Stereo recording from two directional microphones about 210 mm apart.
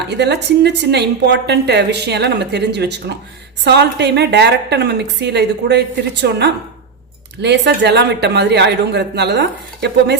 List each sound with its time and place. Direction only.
0.1 s a woman's voice: 55° right (ahead or behind)
7.4 s a woman's voice: 55° right (ahead or behind)